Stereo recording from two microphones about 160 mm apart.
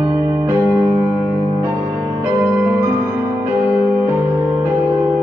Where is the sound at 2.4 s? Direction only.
10° right (ahead or behind).